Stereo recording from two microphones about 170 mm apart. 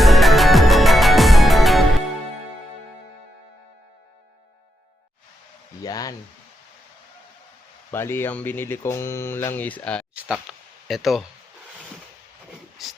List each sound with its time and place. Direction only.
0.0 s music: centre (ahead or behind)
5.8 s speech: 20° left (ahead or behind)
7.9 s speech: 15° left (ahead or behind)
10.2 s speech: 5° right (ahead or behind)
12.8 s speech: centre (ahead or behind)